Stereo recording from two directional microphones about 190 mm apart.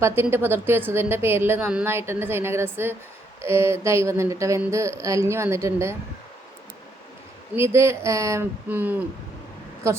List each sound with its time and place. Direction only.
0.0 s a woman's voice: 15° right (ahead or behind)
7.5 s a woman's voice: 15° right (ahead or behind)